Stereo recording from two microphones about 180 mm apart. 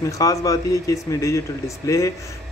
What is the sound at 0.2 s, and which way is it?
A man's voice, 20° left (ahead or behind).